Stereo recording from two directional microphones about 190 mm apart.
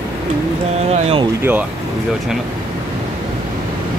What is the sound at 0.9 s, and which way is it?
Speech, 30° right (ahead or behind).